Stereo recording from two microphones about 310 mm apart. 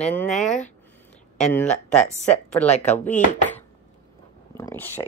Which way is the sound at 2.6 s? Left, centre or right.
Left.